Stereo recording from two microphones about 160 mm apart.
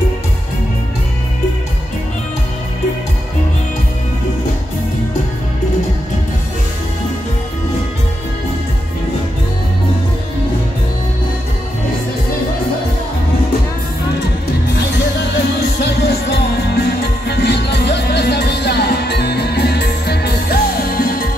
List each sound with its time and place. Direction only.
15.8 s music: 90° left; by 21.3 s 65° left (ahead or behind)